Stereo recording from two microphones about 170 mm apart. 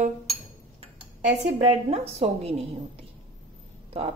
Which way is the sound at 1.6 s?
40° right (ahead or behind).